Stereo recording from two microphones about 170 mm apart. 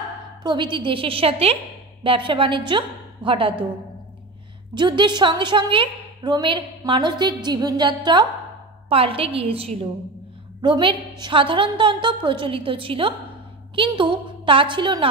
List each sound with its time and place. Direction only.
0.4 s a woman's voice: 25° right (ahead or behind)
4.7 s a woman's voice: 25° right (ahead or behind)